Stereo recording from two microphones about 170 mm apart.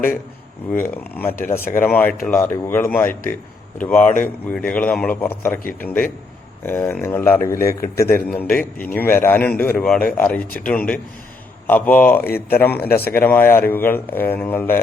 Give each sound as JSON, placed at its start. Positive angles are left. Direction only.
{"t": 0.7, "sound": "a man's voice", "side_deg": 10}
{"t": 1.3, "sound": "speech", "side_deg": 55}
{"t": 1.8, "sound": "a man's voice", "side_deg": 10}
{"t": 12.2, "sound": "speech", "side_deg": 65}
{"t": 12.5, "sound": "a man's voice", "side_deg": 10}